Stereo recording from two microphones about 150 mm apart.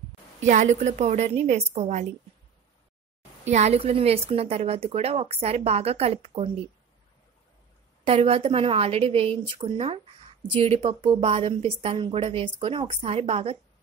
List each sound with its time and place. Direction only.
0.4 s a woman's voice: 55° right (ahead or behind)
3.4 s a woman's voice: 50° right (ahead or behind)
8.0 s a woman's voice: 40° right (ahead or behind)